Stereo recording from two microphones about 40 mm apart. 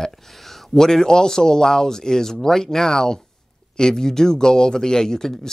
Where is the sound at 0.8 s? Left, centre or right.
Centre.